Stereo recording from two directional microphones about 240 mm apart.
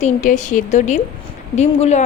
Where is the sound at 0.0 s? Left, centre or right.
Left.